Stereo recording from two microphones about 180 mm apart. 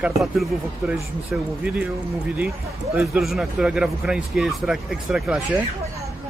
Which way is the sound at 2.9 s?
5° right (ahead or behind).